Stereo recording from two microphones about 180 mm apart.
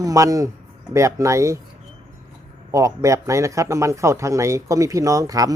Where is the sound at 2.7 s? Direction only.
20° right (ahead or behind).